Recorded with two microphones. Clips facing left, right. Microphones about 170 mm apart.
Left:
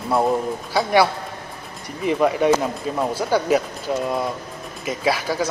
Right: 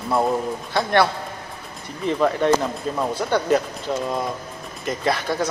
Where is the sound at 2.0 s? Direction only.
10° left (ahead or behind).